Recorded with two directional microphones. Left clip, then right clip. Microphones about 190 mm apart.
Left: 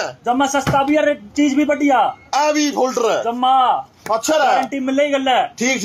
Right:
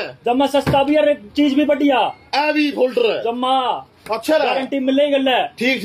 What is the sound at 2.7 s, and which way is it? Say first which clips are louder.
Speech: even; 55° left (ahead or behind).